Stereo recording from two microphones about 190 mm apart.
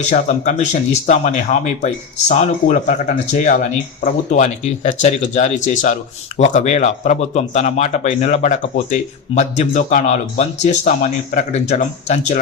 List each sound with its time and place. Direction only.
0.1 s speech: 40° left (ahead or behind)